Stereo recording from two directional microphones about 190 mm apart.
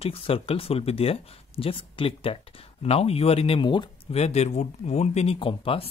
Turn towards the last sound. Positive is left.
turn(degrees=30)  # may be behind; listen again after turning